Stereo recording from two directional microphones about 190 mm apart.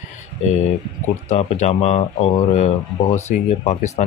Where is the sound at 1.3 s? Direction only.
35° left (ahead or behind).